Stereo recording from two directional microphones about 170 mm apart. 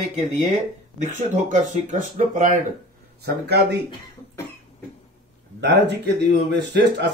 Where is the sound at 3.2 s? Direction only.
75° right (ahead or behind).